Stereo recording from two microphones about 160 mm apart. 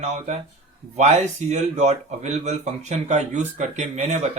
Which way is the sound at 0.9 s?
45° right (ahead or behind).